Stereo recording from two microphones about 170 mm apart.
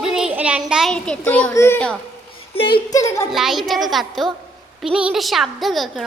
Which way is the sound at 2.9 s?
20° left (ahead or behind).